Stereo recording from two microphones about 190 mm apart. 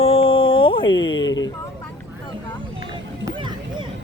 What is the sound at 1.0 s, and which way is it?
Speech, 85° left.